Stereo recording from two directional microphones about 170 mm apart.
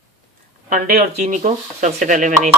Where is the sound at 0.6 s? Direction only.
50° right (ahead or behind).